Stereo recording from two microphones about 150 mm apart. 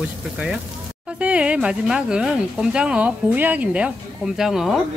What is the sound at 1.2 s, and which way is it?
A woman's voice, 10° right (ahead or behind).